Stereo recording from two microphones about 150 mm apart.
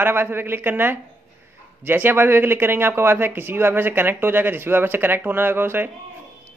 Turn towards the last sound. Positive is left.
turn(degrees=-15)  # may be behind; listen again after turning